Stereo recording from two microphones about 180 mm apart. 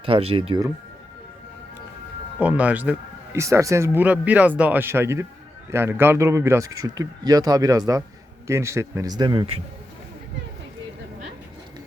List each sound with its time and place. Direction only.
0.0 s speech: 30° right (ahead or behind)
2.4 s a man's voice: 10° right (ahead or behind); by 9.6 s 25° right (ahead or behind)